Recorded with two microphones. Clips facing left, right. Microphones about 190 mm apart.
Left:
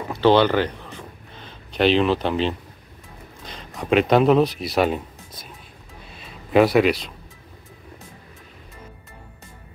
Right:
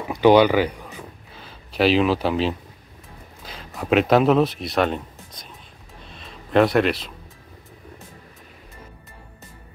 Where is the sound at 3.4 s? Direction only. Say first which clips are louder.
Even; 5° right (ahead or behind).